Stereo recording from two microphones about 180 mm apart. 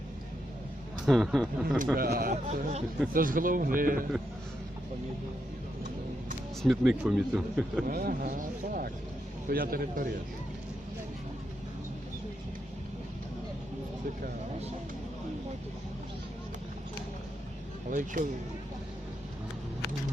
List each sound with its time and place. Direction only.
1.0 s speech: centre (ahead or behind)
2.0 s speech: 55° right (ahead or behind)
3.1 s speech: 50° right (ahead or behind)
6.6 s speech: centre (ahead or behind)
7.9 s a man's voice: 55° right (ahead or behind)
17.9 s speech: 45° right (ahead or behind)